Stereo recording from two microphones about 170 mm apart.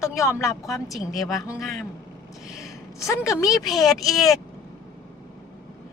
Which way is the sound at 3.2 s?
20° left (ahead or behind).